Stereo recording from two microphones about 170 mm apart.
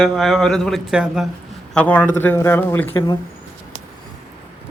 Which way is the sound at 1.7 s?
10° left (ahead or behind).